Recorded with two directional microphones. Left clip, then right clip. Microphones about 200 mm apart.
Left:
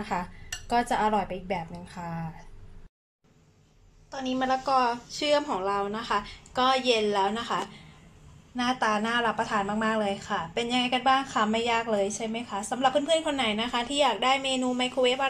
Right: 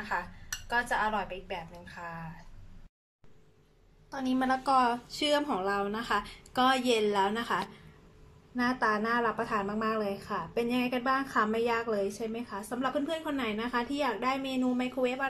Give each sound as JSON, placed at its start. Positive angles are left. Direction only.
{"t": 0.7, "sound": "speech", "side_deg": 20}
{"t": 4.1, "sound": "a woman's voice", "side_deg": -5}